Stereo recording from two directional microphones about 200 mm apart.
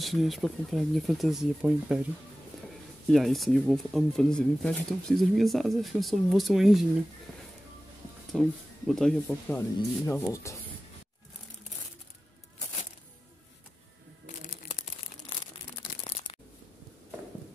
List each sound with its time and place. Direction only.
0.0 s speech: centre (ahead or behind)
3.1 s speech: centre (ahead or behind)
8.3 s speech: centre (ahead or behind)
14.2 s a sound: 40° left (ahead or behind)